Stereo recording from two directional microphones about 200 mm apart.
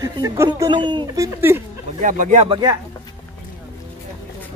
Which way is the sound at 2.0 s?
40° right (ahead or behind).